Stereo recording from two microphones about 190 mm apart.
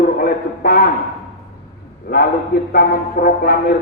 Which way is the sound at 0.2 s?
50° left (ahead or behind).